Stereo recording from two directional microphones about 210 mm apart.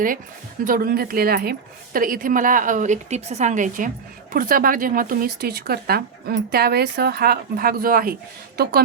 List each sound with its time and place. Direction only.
0.6 s a woman's voice: 45° right (ahead or behind)